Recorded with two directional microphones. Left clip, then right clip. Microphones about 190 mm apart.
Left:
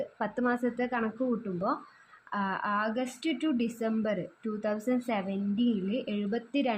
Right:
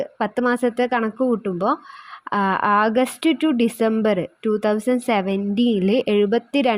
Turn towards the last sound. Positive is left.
turn(degrees=-45)  # may be behind; listen again after turning